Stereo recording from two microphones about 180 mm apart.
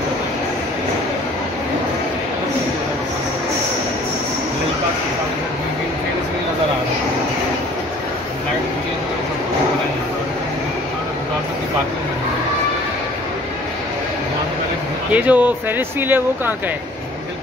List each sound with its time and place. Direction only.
15.1 s speech: 10° right (ahead or behind)